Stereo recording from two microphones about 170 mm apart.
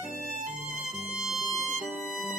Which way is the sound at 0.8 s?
5° right (ahead or behind).